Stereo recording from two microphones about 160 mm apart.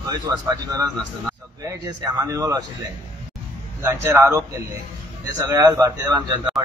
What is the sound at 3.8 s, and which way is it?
A man's voice, 15° right (ahead or behind).